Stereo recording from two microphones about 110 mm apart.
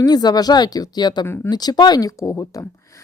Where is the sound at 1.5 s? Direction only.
40° left (ahead or behind).